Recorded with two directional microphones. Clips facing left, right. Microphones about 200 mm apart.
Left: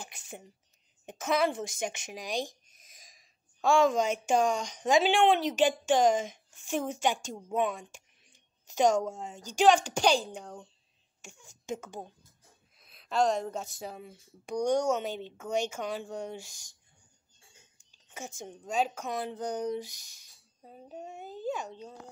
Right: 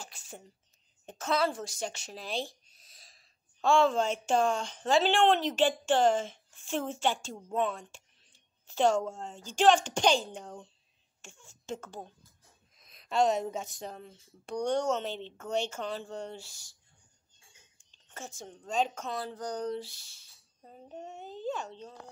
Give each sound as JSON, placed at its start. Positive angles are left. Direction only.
{"t": 0.0, "sound": "whispering", "side_deg": 15}
{"t": 1.0, "sound": "a woman's voice", "side_deg": 15}
{"t": 11.2, "sound": "speech", "side_deg": 15}
{"t": 17.9, "sound": "a woman's voice", "side_deg": 10}
{"t": 19.1, "sound": "speech", "side_deg": 20}
{"t": 20.6, "sound": "a child's voice", "side_deg": 5}